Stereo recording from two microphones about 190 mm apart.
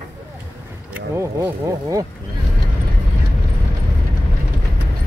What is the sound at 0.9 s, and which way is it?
Speech, 10° right (ahead or behind).